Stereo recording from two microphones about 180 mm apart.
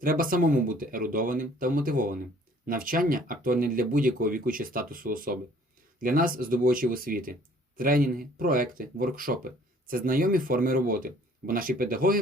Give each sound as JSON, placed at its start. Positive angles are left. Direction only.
{"t": 0.0, "sound": "speech", "side_deg": -50}